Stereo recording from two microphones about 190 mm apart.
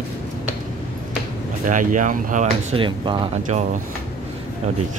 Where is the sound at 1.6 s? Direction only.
45° right (ahead or behind); by 3.6 s 25° right (ahead or behind).